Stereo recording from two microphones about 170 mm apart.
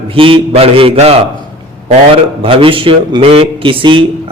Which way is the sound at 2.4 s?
30° right (ahead or behind).